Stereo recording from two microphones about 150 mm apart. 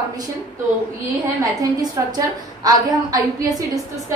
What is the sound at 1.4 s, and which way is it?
A woman's voice, 25° right (ahead or behind).